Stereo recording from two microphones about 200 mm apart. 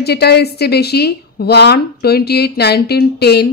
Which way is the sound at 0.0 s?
55° left (ahead or behind).